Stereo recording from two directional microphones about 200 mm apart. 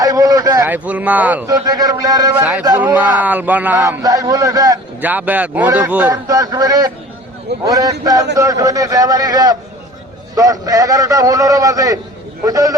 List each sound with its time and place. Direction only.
0.0 s a man's voice: 20° right (ahead or behind)
2.4 s a man's voice: 5° right (ahead or behind)